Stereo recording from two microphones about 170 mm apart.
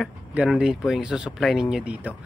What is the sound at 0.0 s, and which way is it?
Speech, 5° right (ahead or behind).